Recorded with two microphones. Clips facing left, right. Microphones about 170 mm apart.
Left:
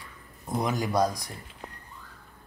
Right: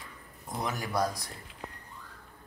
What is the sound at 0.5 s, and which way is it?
Speech, 15° left (ahead or behind).